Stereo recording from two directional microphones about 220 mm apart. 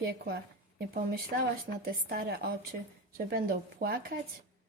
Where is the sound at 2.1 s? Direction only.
45° right (ahead or behind).